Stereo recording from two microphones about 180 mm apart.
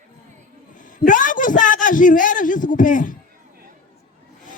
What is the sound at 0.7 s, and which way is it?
A man's voice, 45° left (ahead or behind).